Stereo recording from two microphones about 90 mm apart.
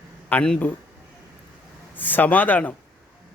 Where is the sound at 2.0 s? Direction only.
20° left (ahead or behind).